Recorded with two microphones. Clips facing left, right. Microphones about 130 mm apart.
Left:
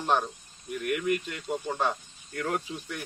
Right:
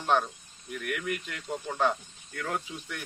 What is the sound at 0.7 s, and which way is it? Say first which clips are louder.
A man's voice: left 5 dB; 20° left (ahead or behind).